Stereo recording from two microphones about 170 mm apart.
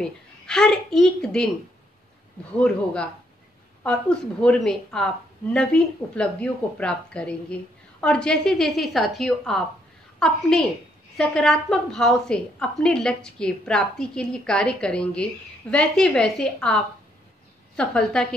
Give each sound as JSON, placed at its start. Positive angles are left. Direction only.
{"t": 0.5, "sound": "a woman's voice", "side_deg": 5}
{"t": 2.5, "sound": "a woman's voice", "side_deg": 5}